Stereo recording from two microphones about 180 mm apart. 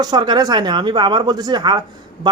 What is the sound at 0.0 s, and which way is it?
A man's voice, 25° right (ahead or behind).